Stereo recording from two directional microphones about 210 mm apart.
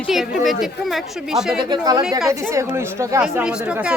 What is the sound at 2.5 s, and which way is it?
A woman's voice, 15° right (ahead or behind).